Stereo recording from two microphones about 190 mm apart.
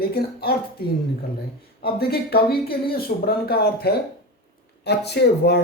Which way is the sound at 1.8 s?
55° left (ahead or behind).